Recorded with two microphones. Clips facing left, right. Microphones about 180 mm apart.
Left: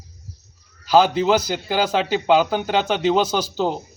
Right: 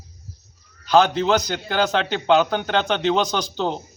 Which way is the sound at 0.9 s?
10° left (ahead or behind).